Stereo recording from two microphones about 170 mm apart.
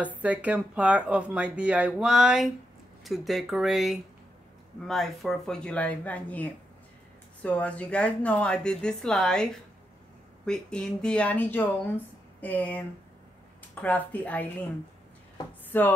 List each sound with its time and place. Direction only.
0.0 s speech: 10° right (ahead or behind); by 14.4 s 10° left (ahead or behind)
15.7 s speech: 10° left (ahead or behind)